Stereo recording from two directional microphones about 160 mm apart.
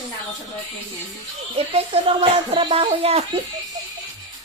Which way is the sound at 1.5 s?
35° right (ahead or behind).